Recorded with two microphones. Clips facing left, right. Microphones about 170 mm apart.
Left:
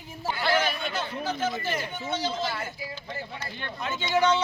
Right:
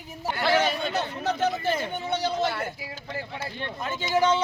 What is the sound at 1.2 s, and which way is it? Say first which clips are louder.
Speech: right 4 dB; 70° right (ahead or behind).